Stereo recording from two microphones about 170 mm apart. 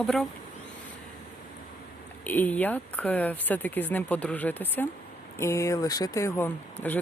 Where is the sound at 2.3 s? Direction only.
10° left (ahead or behind).